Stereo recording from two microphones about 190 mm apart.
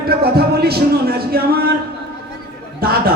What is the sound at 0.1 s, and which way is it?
Speech, 55° right (ahead or behind).